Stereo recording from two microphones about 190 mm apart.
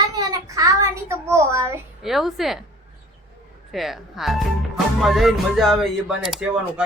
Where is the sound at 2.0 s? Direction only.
Centre (ahead or behind).